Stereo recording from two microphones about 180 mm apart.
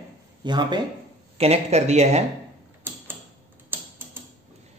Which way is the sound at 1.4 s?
35° right (ahead or behind).